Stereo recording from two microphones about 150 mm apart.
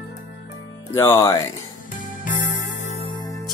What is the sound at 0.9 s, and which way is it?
Speech, 20° left (ahead or behind).